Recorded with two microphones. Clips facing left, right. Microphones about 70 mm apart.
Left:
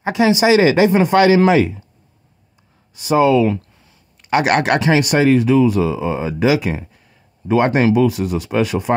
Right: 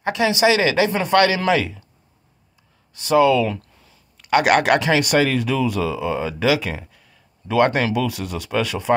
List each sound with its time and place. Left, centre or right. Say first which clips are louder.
0.0 s speech: left 3 dB; left
2.9 s speech: left 2 dB; centre